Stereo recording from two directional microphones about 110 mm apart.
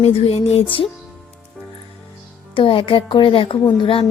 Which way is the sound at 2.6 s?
55° left (ahead or behind).